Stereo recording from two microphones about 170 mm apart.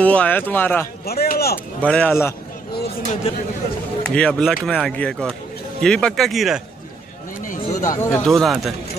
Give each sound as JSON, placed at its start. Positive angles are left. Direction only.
{"t": 0.0, "sound": "speech", "side_deg": 10}
{"t": 1.0, "sound": "speech", "side_deg": 65}
{"t": 1.8, "sound": "speech", "side_deg": 5}
{"t": 4.0, "sound": "speech", "side_deg": 5}
{"t": 7.4, "sound": "a sound", "side_deg": 45}
{"t": 7.9, "sound": "speech", "side_deg": 15}
{"t": 8.3, "sound": "speech", "side_deg": 0}